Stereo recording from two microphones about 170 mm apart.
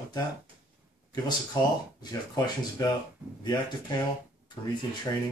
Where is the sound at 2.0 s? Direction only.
20° left (ahead or behind).